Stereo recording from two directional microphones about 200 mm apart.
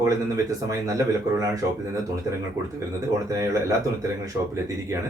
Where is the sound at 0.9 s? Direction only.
15° right (ahead or behind).